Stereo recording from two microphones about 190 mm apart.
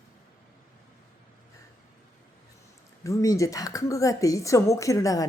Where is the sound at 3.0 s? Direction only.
15° left (ahead or behind).